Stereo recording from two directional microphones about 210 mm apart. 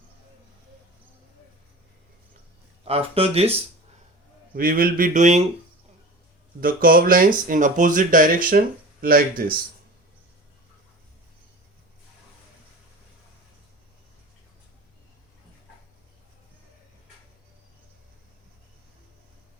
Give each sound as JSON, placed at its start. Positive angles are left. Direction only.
{"t": 2.8, "sound": "speech", "side_deg": -30}
{"t": 4.5, "sound": "speech", "side_deg": -45}
{"t": 6.6, "sound": "speech", "side_deg": -40}